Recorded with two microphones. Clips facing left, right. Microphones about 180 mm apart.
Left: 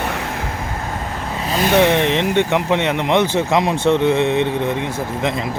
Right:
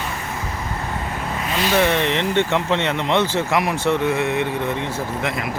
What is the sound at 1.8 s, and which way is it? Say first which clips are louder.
Speech: left 4 dB; 20° left (ahead or behind).